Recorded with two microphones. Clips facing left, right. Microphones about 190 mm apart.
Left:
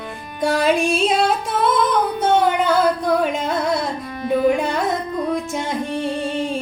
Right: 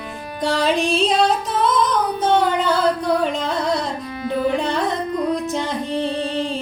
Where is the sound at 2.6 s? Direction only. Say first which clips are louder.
Left 1 dB; 10° left (ahead or behind).